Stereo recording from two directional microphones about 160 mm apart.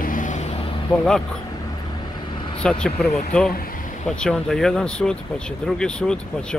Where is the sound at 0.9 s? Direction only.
10° left (ahead or behind).